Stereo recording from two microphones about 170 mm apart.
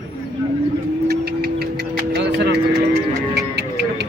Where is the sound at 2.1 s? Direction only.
90° right.